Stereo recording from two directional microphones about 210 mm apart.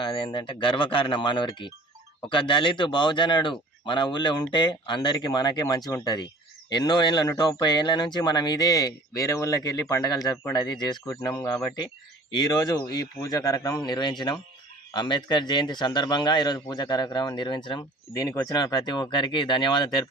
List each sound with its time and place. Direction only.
0.0 s a man's voice: 25° left (ahead or behind)